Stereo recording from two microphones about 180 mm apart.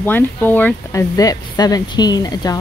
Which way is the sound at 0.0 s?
10° left (ahead or behind).